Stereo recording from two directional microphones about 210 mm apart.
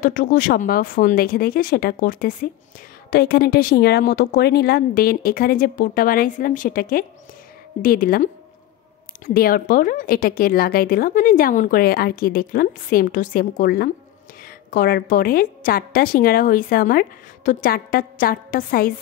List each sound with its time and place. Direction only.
0.0 s speech: 40° left (ahead or behind)